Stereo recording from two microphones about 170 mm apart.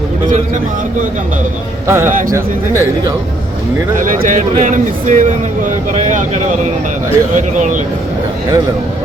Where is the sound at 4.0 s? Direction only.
50° right (ahead or behind).